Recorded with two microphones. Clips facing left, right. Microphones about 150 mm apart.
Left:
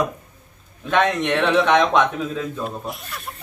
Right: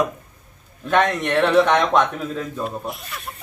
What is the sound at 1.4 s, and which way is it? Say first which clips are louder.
A man's voice: right 1 dB; 10° left (ahead or behind).